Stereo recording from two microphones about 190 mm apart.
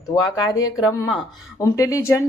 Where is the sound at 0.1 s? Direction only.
20° left (ahead or behind).